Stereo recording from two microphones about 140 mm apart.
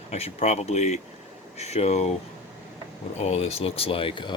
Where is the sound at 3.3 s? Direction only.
45° left (ahead or behind).